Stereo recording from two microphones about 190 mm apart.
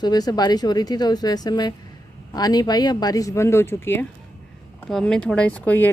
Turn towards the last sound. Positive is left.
turn(degrees=10)  # may be behind; listen again after turning